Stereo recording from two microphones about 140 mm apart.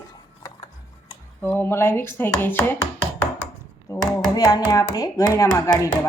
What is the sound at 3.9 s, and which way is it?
Speech, 25° left (ahead or behind).